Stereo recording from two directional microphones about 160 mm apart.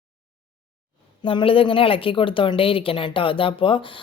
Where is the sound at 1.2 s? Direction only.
35° left (ahead or behind).